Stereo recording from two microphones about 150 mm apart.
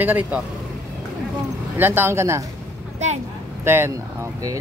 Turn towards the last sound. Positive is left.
turn(degrees=-20)  # may be behind; listen again after turning